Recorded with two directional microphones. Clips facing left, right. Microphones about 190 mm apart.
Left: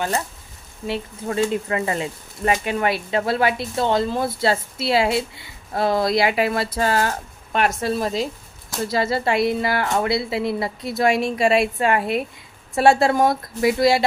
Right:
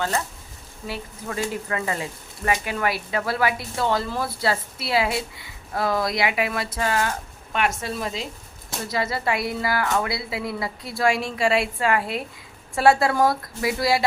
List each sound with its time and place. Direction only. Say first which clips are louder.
0.9 s speech: left 6 dB; 25° left (ahead or behind)